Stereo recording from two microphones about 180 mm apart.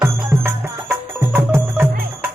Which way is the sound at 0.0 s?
15° right (ahead or behind).